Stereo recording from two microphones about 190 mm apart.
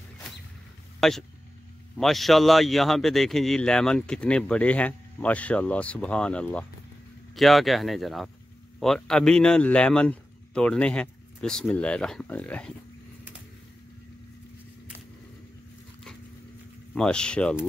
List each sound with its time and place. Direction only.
1.0 s a man's voice: centre (ahead or behind)
16.9 s a man's voice: 5° left (ahead or behind)